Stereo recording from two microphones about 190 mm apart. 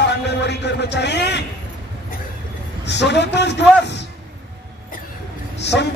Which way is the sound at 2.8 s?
65° left (ahead or behind).